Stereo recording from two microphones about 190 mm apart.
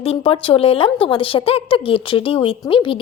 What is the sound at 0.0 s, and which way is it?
A woman's voice, 30° left (ahead or behind).